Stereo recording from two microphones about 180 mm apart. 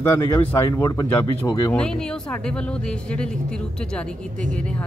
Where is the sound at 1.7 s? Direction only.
5° left (ahead or behind).